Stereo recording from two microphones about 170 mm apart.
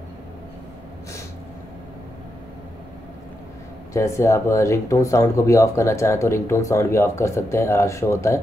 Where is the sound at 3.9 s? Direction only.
15° left (ahead or behind).